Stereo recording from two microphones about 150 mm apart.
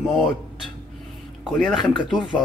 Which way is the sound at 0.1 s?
Centre (ahead or behind).